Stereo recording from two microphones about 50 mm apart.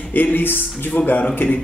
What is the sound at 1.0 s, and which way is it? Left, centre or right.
Speech, left.